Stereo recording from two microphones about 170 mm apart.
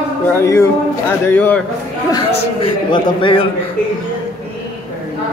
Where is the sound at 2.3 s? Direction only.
30° left (ahead or behind).